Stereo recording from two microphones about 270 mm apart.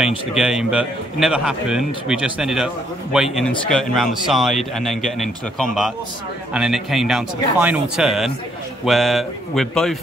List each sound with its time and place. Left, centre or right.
0.0 s a man's voice: centre